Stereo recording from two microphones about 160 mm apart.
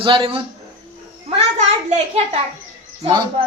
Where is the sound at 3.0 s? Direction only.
25° right (ahead or behind).